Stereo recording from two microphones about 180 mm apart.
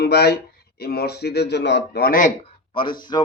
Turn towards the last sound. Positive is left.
turn(degrees=25)  # may be behind; listen again after turning